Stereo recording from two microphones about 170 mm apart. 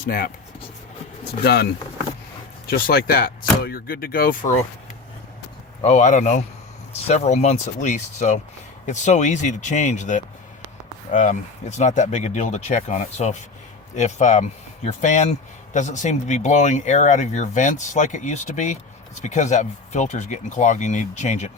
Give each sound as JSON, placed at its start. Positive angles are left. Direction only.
{"t": 0.0, "sound": "speech", "side_deg": 60}
{"t": 2.6, "sound": "speech", "side_deg": 60}
{"t": 5.8, "sound": "speech", "side_deg": 40}